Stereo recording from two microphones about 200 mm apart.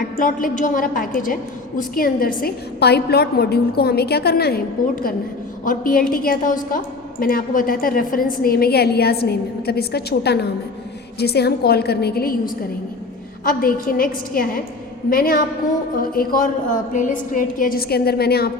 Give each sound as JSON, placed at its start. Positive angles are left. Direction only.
{"t": 0.2, "sound": "a woman's voice", "side_deg": 45}